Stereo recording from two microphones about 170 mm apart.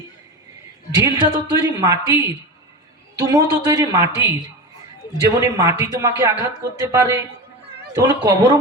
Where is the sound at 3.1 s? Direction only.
20° right (ahead or behind).